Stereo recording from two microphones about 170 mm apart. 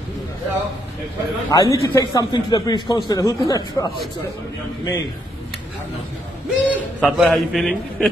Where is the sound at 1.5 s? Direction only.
20° left (ahead or behind).